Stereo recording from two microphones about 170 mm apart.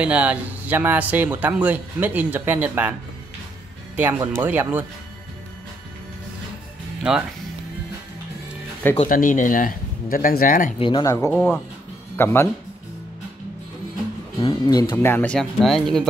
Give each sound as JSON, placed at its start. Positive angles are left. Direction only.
{"t": 0.0, "sound": "speech", "side_deg": -5}
{"t": 7.0, "sound": "speech", "side_deg": -5}
{"t": 9.1, "sound": "speech", "side_deg": 50}
{"t": 10.8, "sound": "speech", "side_deg": 30}
{"t": 11.1, "sound": "speech", "side_deg": 15}
{"t": 14.4, "sound": "speech", "side_deg": 25}